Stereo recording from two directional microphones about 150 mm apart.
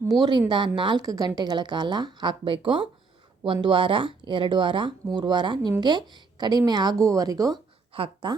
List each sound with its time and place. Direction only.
0.2 s a woman's voice: 30° right (ahead or behind)
7.9 s speech: 35° right (ahead or behind)